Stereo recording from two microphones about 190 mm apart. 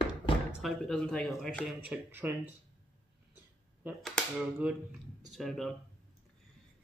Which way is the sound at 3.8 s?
10° right (ahead or behind).